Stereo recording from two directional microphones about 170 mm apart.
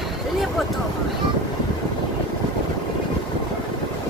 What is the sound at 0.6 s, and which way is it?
Vehicle, centre (ahead or behind).